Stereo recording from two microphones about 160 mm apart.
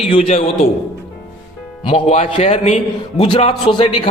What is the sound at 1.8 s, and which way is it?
A man's voice, 40° left (ahead or behind).